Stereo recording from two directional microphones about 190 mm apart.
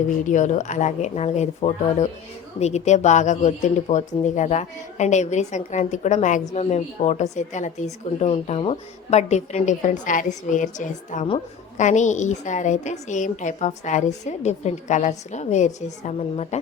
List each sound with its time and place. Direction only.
0.3 s a woman's voice: 40° left (ahead or behind)